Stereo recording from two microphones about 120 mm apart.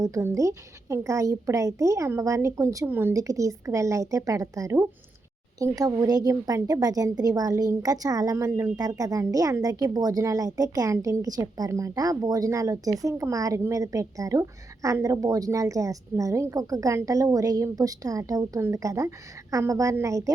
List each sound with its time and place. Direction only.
0.0 s a woman's voice: 25° right (ahead or behind)